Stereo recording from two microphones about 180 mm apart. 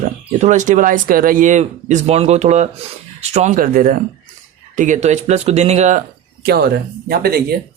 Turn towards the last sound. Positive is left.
turn(degrees=-55)  # may be behind; listen again after turning